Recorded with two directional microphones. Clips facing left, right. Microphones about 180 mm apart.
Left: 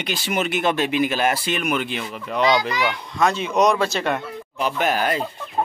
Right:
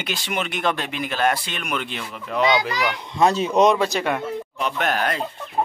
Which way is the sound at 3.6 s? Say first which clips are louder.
Right 1 dB; 20° right (ahead or behind).